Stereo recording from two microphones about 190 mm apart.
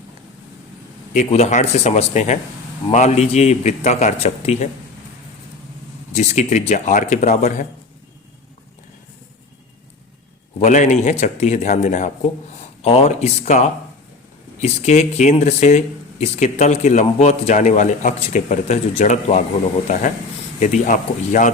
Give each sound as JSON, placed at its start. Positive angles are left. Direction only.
{"t": 1.1, "sound": "speech", "side_deg": 35}
{"t": 6.1, "sound": "speech", "side_deg": 40}
{"t": 10.6, "sound": "speech", "side_deg": 40}
{"t": 20.6, "sound": "speech", "side_deg": 40}